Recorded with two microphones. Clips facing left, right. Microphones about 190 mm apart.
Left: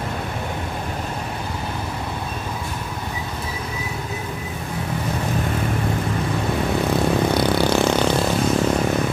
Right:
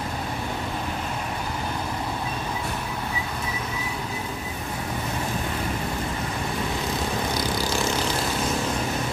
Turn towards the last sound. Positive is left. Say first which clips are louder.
# left 8 dB
turn(degrees=65)  # may be behind; listen again after turning